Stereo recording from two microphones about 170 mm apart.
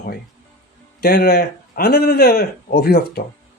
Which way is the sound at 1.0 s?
70° left (ahead or behind).